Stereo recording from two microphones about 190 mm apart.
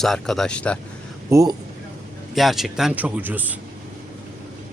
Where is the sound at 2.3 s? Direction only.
Centre (ahead or behind).